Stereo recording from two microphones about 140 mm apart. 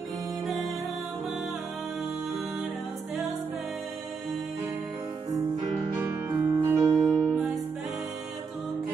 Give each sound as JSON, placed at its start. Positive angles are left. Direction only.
{"t": 5.9, "sound": "music", "side_deg": -15}
{"t": 6.9, "sound": "music", "side_deg": 0}